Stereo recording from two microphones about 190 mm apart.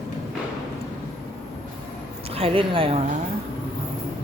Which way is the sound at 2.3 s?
30° right (ahead or behind).